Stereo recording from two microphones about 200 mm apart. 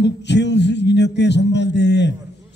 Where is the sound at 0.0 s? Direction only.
60° left (ahead or behind).